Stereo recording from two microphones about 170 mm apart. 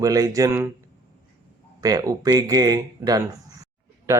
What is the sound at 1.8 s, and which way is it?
Speech, 20° right (ahead or behind).